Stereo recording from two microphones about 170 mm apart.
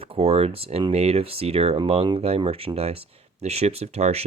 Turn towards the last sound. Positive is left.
turn(degrees=-40)  # may be behind; listen again after turning